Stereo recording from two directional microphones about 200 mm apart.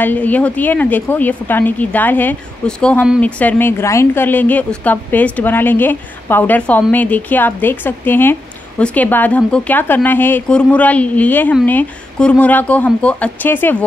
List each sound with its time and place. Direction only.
0.0 s a woman's voice: 10° left (ahead or behind)